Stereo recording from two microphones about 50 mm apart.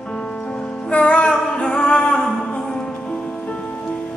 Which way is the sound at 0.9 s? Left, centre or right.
Left.